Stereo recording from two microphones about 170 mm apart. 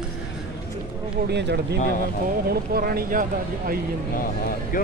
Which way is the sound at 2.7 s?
60° right (ahead or behind).